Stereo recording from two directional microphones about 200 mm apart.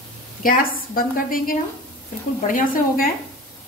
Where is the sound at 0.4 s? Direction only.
45° left (ahead or behind).